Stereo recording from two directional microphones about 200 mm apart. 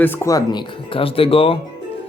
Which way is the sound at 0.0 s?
10° left (ahead or behind).